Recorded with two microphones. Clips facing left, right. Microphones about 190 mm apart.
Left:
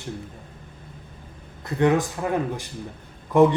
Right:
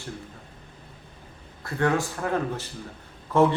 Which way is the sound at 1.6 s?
20° left (ahead or behind).